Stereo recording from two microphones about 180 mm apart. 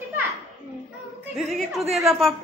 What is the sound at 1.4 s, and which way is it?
Speech, centre (ahead or behind).